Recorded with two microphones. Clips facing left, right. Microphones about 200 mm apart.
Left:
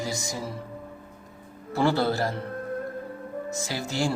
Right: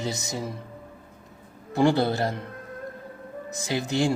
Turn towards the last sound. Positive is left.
turn(degrees=-20)  # may be behind; listen again after turning